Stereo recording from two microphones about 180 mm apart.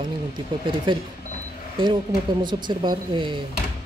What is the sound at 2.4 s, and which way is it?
Speech, 25° right (ahead or behind).